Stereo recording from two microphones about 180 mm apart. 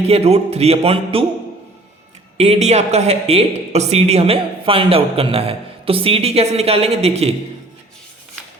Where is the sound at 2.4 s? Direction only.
35° right (ahead or behind).